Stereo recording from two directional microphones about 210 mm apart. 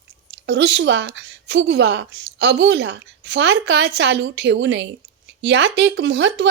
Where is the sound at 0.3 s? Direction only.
55° right (ahead or behind).